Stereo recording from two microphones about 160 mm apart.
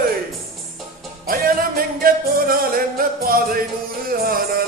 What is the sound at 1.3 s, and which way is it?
Music, 65° right (ahead or behind).